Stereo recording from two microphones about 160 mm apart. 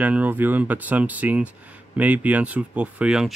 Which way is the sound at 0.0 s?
10° right (ahead or behind).